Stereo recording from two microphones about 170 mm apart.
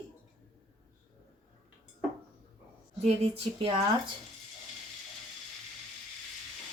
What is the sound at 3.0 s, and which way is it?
Speech, 35° right (ahead or behind).